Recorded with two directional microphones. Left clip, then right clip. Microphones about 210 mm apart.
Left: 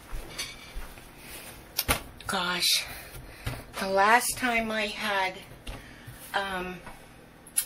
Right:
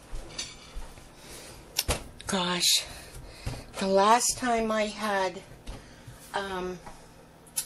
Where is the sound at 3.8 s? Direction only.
40° right (ahead or behind).